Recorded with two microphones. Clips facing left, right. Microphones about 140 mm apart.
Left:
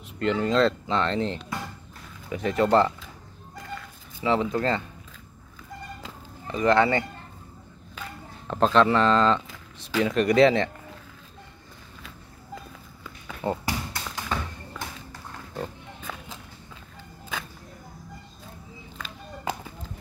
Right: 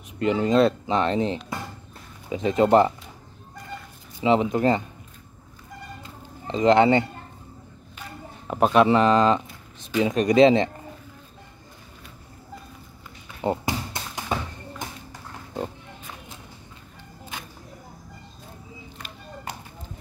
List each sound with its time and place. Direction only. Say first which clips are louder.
0.2 s speech: right 3 dB; 15° right (ahead or behind)
4.2 s speech: right 4 dB; 20° right (ahead or behind)
6.4 s speech: right 4 dB; 20° right (ahead or behind)
8.5 s speech: right 2 dB; 10° right (ahead or behind)
13.4 s bouncing: right 3 dB; 20° right (ahead or behind)